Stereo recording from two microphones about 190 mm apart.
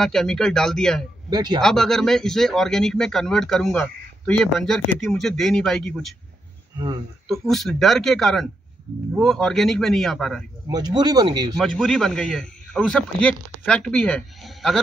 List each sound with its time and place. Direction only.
0.0 s a man's voice: centre (ahead or behind)
1.3 s speech: 20° right (ahead or behind)
1.6 s a man's voice: centre (ahead or behind)
7.2 s a man's voice: centre (ahead or behind)
10.7 s speech: 20° right (ahead or behind)
11.5 s a man's voice: centre (ahead or behind)